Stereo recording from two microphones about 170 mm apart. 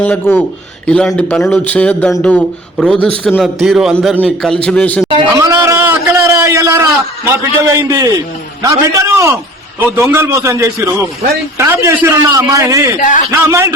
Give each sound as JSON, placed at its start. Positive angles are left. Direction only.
{"t": 0.0, "sound": "a man's voice", "side_deg": 10}
{"t": 5.4, "sound": "a sound", "side_deg": -20}
{"t": 7.6, "sound": "a man's voice", "side_deg": -20}
{"t": 13.0, "sound": "a man's voice", "side_deg": 50}
{"t": 13.5, "sound": "a man's voice", "side_deg": -15}